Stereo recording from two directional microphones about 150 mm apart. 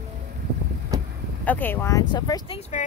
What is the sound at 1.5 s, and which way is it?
Speech, 10° left (ahead or behind).